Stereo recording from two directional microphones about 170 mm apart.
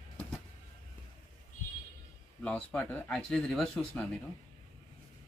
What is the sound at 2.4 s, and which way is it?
Speech, 5° left (ahead or behind).